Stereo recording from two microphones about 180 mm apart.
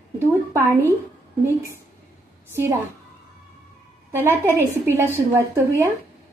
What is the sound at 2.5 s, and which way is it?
Speech, 15° right (ahead or behind).